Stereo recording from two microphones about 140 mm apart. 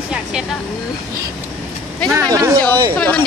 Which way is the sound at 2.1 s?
20° right (ahead or behind).